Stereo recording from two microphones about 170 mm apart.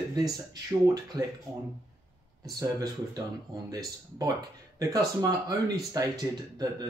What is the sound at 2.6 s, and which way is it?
Speech, 20° right (ahead or behind).